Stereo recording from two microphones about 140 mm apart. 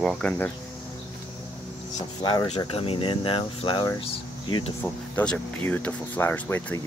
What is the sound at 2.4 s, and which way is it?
Speech, 45° left (ahead or behind).